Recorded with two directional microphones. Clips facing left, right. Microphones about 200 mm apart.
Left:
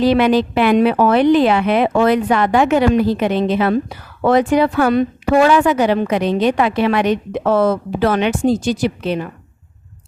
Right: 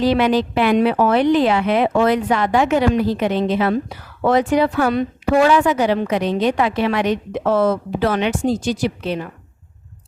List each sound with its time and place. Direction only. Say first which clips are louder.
0.0 s a woman's voice: left 3 dB; 65° left (ahead or behind)